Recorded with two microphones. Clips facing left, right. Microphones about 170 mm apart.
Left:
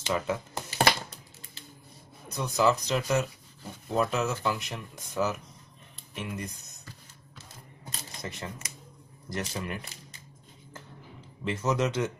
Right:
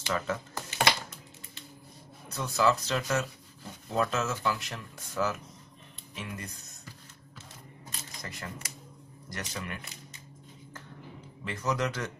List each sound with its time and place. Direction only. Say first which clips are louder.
0.0 s speech: left 2 dB; 15° left (ahead or behind)
0.7 s a sound: left 3 dB; 35° left (ahead or behind)
2.2 s speech: left 2 dB; 15° left (ahead or behind)
8.2 s speech: left 3 dB; 25° left (ahead or behind)
11.4 s speech: left 3 dB; 25° left (ahead or behind)